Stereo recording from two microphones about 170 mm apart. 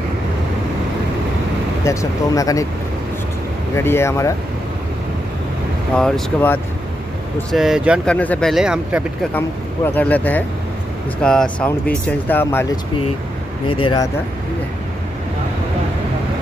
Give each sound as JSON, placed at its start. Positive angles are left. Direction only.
{"t": 1.9, "sound": "speech", "side_deg": 20}
{"t": 3.7, "sound": "speech", "side_deg": 15}
{"t": 5.9, "sound": "speech", "side_deg": 5}
{"t": 8.1, "sound": "speech", "side_deg": 5}
{"t": 9.8, "sound": "speech", "side_deg": 10}
{"t": 13.7, "sound": "speech", "side_deg": 30}